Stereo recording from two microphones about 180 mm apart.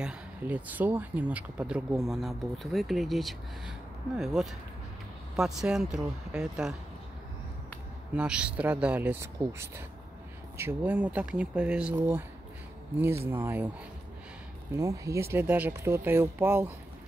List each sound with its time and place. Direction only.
0.0 s speech: 5° right (ahead or behind)
8.1 s speech: 5° right (ahead or behind)
13.3 s speech: 10° right (ahead or behind)
14.8 s speech: 15° right (ahead or behind)